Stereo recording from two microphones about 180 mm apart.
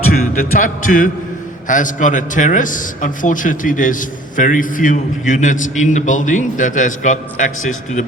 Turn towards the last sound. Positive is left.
turn(degrees=45)  # may be behind; listen again after turning